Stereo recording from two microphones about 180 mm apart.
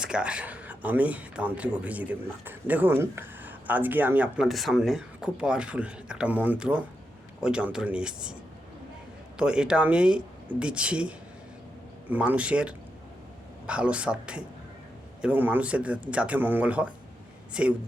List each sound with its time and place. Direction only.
0.0 s a man's voice: 5° right (ahead or behind)
9.4 s a man's voice: 5° right (ahead or behind)